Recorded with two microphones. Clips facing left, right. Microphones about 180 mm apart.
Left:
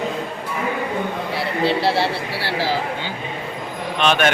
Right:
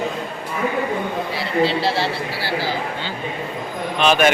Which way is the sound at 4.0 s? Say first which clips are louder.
Right 2 dB; centre (ahead or behind).